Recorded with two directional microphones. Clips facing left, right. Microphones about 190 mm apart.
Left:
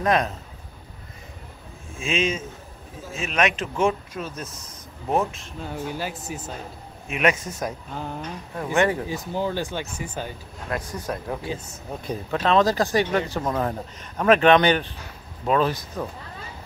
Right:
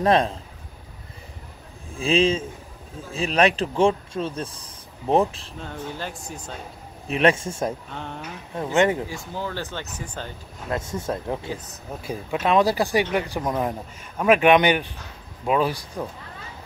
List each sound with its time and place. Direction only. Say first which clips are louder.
0.0 s speech: right 3 dB; 30° right (ahead or behind)
2.0 s speech: right 5 dB; 35° right (ahead or behind)
5.6 s speech: left 3 dB; 10° left (ahead or behind)
7.1 s speech: right 3 dB; 30° right (ahead or behind)
7.9 s speech: left 2 dB; 5° left (ahead or behind)
8.7 s speech: right 1 dB; 20° right (ahead or behind)
9.0 s speech: left 4 dB; 20° left (ahead or behind)
10.7 s speech: right 2 dB; 25° right (ahead or behind)
11.4 s speech: left 1 dB; 25° left (ahead or behind)
12.0 s speech: even; 10° right (ahead or behind)